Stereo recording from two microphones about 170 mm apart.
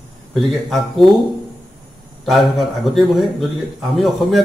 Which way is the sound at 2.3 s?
Centre (ahead or behind).